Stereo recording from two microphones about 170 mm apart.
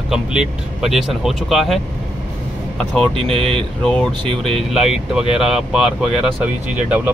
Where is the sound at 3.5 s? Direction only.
5° left (ahead or behind).